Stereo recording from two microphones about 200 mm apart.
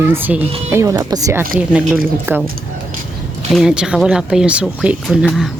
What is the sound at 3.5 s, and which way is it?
Speech, 5° right (ahead or behind).